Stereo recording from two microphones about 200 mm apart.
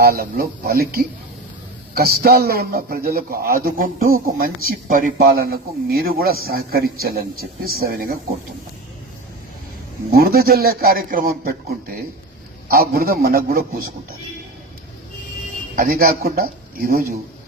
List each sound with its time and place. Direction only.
0.0 s a man's voice: 50° right (ahead or behind)
10.1 s a man's voice: 50° right (ahead or behind)
15.7 s a man's voice: 45° right (ahead or behind)